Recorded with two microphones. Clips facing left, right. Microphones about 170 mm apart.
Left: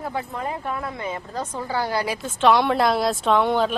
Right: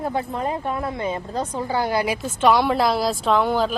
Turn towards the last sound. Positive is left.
turn(degrees=0)  # may be behind; listen again after turning